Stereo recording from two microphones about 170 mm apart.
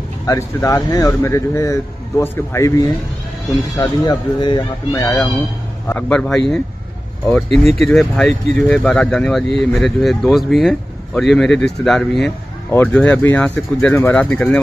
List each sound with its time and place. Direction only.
0.3 s speech: 15° left (ahead or behind)
7.7 s speech: centre (ahead or behind)